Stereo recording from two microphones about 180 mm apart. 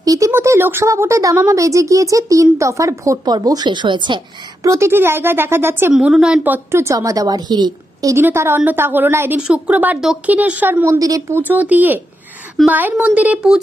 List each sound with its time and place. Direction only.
0.0 s a woman's voice: 20° right (ahead or behind)
4.6 s a woman's voice: 15° right (ahead or behind)